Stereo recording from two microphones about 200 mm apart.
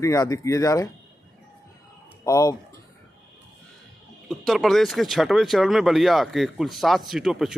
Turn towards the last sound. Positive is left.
turn(degrees=-5)  # may be behind; listen again after turning